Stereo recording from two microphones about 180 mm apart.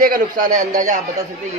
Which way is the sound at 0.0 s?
50° right (ahead or behind).